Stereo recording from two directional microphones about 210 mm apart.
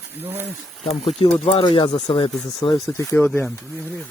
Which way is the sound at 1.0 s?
30° left (ahead or behind).